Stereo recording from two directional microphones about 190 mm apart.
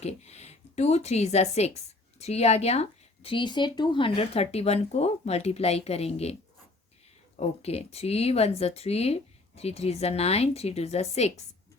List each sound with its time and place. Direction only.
0.0 s a woman's voice: 35° left (ahead or behind)
7.3 s a woman's voice: 35° left (ahead or behind)